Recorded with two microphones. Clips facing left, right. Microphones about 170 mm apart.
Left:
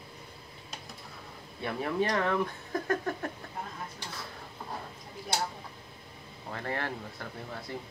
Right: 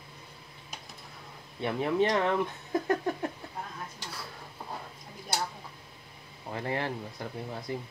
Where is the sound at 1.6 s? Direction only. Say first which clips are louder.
Right 3 dB; 20° right (ahead or behind).